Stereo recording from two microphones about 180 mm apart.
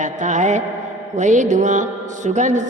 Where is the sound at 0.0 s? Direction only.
45° right (ahead or behind).